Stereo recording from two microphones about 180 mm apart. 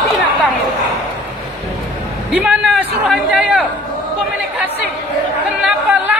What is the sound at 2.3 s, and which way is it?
A man's voice, 5° right (ahead or behind).